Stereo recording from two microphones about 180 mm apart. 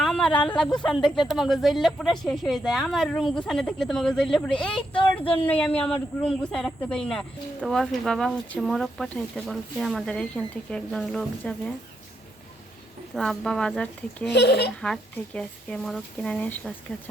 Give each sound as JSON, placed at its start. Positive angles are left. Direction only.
{"t": 0.0, "sound": "a woman's voice", "side_deg": 5}
{"t": 13.1, "sound": "speech", "side_deg": 5}
{"t": 14.3, "sound": "speech", "side_deg": 70}
{"t": 14.8, "sound": "speech", "side_deg": 5}